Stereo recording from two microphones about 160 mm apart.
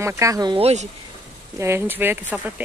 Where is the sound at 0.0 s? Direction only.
20° right (ahead or behind).